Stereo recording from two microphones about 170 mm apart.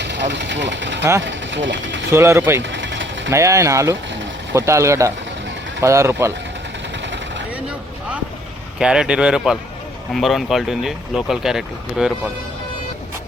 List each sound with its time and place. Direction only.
0.0 s speech: 90° right
2.0 s speech: 15° right (ahead or behind)
2.6 s engine: 90° right
3.3 s speech: 15° right (ahead or behind)
7.0 s vehicle: 90° right
7.5 s vehicle: 5° right (ahead or behind)
8.8 s speech: 5° right (ahead or behind)